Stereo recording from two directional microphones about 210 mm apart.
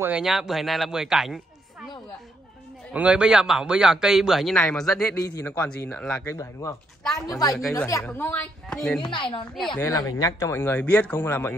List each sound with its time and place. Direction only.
0.0 s speech: 5° right (ahead or behind)
2.9 s a man's voice: 5° right (ahead or behind)
5.1 s a man's voice: 15° left (ahead or behind)
6.3 s a man's voice: 15° left (ahead or behind)
9.0 s a woman's voice: 20° left (ahead or behind)